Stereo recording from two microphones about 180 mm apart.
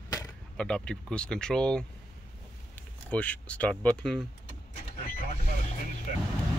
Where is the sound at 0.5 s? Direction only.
5° left (ahead or behind).